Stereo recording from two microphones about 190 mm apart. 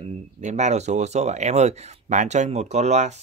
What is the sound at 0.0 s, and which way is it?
Speech, 40° right (ahead or behind).